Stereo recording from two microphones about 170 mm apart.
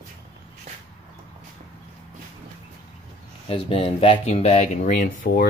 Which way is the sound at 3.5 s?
35° left (ahead or behind).